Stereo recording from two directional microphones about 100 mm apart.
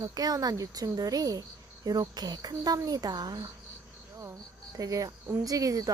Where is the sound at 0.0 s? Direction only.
40° right (ahead or behind).